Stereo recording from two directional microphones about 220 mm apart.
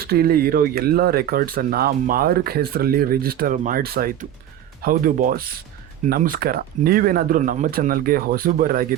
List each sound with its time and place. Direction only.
0.0 s speech: 45° right (ahead or behind)